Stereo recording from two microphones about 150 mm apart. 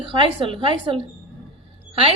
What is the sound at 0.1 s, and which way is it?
Speech, 35° right (ahead or behind).